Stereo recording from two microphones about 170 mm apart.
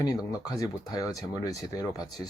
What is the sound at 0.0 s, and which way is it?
Speech, 20° left (ahead or behind).